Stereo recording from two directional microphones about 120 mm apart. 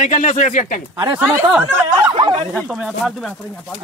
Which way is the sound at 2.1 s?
40° right (ahead or behind).